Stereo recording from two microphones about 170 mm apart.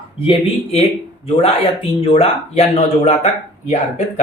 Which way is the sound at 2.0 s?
35° left (ahead or behind).